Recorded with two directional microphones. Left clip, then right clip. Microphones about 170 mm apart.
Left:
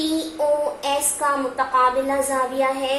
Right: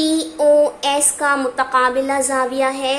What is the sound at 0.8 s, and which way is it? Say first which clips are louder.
A woman's voice: right 4 dB; 50° right (ahead or behind).